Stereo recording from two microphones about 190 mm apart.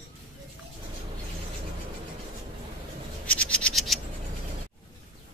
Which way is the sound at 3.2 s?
5° left (ahead or behind).